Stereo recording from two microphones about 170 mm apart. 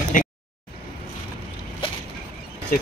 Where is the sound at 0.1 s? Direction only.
50° left (ahead or behind).